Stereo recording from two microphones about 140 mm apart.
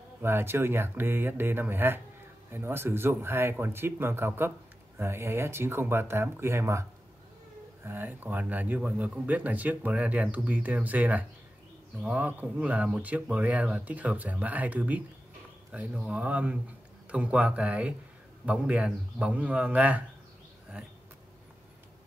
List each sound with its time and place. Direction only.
0.2 s speech: 15° right (ahead or behind)